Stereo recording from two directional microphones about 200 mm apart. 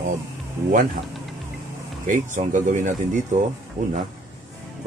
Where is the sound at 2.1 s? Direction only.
40° right (ahead or behind).